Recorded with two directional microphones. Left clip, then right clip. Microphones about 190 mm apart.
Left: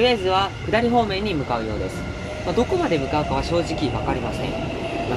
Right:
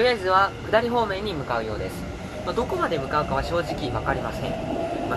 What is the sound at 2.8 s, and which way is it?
Speech, 25° left (ahead or behind).